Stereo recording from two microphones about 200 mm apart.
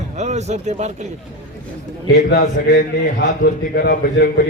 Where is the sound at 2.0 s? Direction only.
55° left (ahead or behind).